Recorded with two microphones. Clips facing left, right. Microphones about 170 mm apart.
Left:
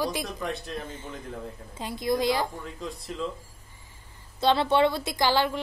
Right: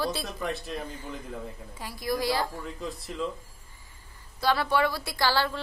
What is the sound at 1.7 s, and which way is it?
Speech, 20° left (ahead or behind).